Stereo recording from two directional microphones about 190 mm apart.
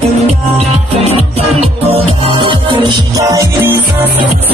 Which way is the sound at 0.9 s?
30° right (ahead or behind).